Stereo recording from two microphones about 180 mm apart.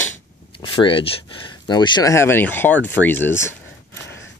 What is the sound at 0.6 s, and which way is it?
Speech, 30° left (ahead or behind).